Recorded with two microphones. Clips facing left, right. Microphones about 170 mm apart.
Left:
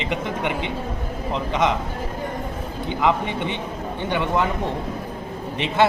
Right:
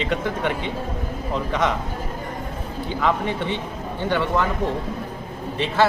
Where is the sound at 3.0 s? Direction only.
15° left (ahead or behind).